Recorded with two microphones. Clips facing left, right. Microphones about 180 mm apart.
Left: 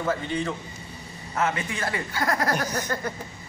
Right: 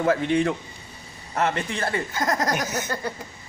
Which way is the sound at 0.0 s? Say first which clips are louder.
Right 6 dB; 75° right (ahead or behind).